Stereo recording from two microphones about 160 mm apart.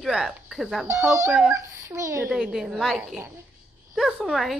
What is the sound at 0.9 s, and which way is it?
A child's voice, 15° right (ahead or behind).